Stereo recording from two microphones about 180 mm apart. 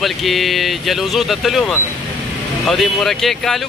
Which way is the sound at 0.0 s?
Centre (ahead or behind).